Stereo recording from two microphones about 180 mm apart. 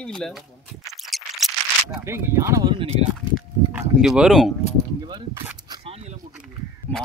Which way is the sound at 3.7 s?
5° right (ahead or behind).